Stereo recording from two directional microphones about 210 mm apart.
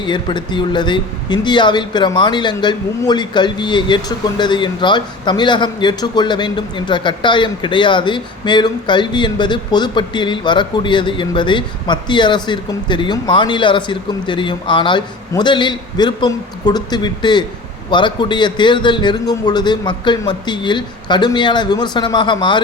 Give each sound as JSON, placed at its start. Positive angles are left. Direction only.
{"t": 0.0, "sound": "speech", "side_deg": 20}